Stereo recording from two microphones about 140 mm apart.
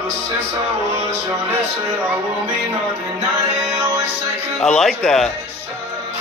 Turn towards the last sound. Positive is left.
turn(degrees=5)  # may be behind; listen again after turning